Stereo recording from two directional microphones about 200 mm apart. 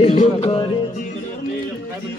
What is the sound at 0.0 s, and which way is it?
Music, 30° left (ahead or behind).